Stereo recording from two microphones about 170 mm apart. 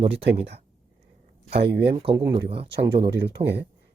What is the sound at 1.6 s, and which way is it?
Speech, 75° right (ahead or behind).